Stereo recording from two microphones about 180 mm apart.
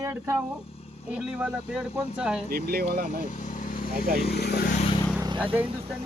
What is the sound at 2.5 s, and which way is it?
Speech, 55° right (ahead or behind).